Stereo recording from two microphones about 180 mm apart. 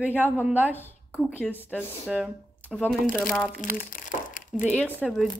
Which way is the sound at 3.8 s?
50° left (ahead or behind).